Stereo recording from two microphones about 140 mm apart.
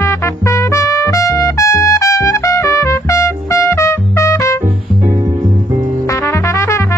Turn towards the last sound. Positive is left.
turn(degrees=20)  # may be behind; listen again after turning